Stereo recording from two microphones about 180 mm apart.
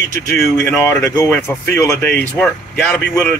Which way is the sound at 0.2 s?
15° left (ahead or behind).